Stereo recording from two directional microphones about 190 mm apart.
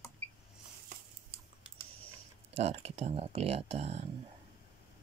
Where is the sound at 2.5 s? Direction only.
30° right (ahead or behind).